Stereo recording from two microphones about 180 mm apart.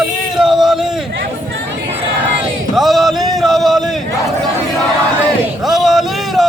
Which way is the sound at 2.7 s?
Centre (ahead or behind).